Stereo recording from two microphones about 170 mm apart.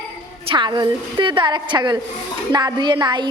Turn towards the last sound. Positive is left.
turn(degrees=-25)  # may be behind; listen again after turning